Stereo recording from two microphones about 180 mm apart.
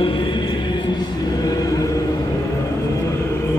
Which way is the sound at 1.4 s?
20° left (ahead or behind).